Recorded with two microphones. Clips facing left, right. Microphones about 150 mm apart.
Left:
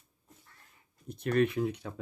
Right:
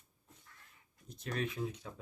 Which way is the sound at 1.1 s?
60° left (ahead or behind).